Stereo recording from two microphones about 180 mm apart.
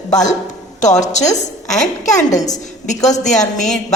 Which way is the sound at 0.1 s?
40° left (ahead or behind).